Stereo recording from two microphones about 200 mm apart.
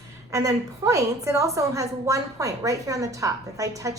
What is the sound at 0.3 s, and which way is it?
A woman's voice, 15° right (ahead or behind).